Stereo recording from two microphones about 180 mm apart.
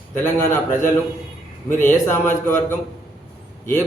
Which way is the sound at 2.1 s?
10° left (ahead or behind).